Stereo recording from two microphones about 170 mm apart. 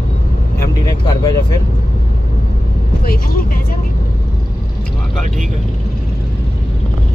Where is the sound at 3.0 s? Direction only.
55° left (ahead or behind).